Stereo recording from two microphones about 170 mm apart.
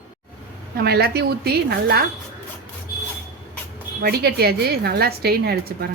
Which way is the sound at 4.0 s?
70° right (ahead or behind).